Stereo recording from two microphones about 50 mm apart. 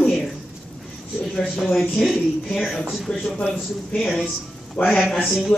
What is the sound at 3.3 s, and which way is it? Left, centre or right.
Speech, left.